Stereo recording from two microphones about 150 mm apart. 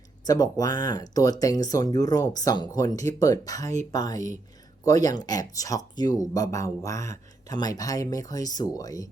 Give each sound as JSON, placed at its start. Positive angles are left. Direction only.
{"t": 0.3, "sound": "speech", "side_deg": 25}